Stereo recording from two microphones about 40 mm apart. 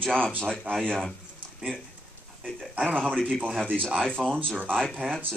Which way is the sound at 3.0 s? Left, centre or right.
Centre.